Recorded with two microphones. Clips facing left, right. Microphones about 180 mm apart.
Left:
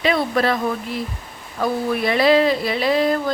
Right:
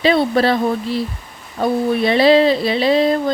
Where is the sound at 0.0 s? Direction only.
30° right (ahead or behind).